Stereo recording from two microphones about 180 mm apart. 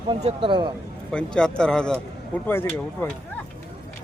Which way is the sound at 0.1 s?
30° right (ahead or behind).